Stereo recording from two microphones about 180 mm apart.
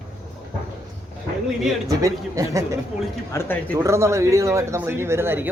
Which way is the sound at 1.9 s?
20° right (ahead or behind).